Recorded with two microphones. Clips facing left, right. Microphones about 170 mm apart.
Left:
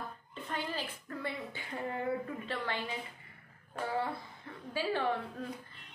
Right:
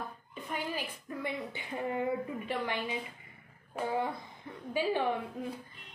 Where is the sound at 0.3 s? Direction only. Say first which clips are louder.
Right 1 dB; 15° right (ahead or behind).